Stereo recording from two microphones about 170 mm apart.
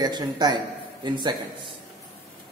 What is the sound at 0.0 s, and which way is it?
A man's voice, 25° right (ahead or behind).